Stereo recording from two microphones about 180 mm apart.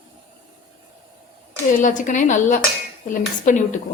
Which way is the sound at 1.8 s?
45° left (ahead or behind).